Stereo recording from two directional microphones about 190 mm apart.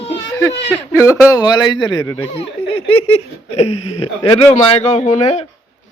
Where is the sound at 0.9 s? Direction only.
15° left (ahead or behind); by 5.4 s 35° left (ahead or behind).